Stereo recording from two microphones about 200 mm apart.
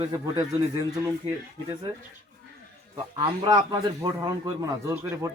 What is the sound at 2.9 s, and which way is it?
A man's voice, 25° right (ahead or behind).